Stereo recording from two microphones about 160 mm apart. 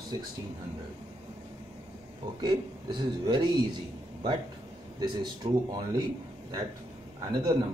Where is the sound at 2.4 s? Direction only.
30° right (ahead or behind).